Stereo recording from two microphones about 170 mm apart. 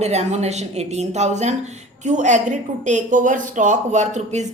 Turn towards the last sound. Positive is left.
turn(degrees=-45)  # may be behind; listen again after turning